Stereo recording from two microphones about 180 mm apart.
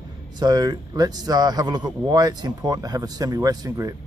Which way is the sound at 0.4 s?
25° right (ahead or behind).